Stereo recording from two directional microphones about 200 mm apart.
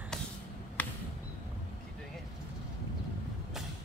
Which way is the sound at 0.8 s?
10° left (ahead or behind).